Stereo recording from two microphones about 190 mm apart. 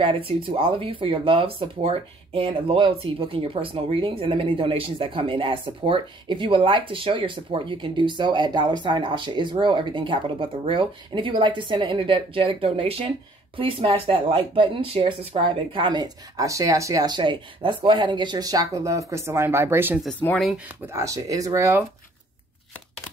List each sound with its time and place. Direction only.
0.0 s speech: 30° right (ahead or behind); by 20.0 s 10° right (ahead or behind)
20.0 s speech: 5° left (ahead or behind); by 21.8 s 15° right (ahead or behind)